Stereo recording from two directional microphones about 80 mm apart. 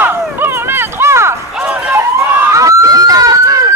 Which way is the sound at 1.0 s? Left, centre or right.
Right.